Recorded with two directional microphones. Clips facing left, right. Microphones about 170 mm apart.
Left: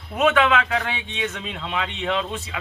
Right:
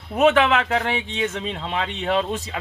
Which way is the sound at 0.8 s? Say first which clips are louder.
Right 4 dB; 40° right (ahead or behind).